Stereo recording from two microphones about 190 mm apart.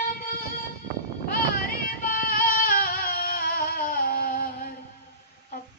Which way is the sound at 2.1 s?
50° left (ahead or behind).